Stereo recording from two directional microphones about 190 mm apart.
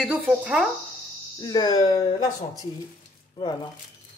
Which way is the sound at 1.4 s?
20° left (ahead or behind).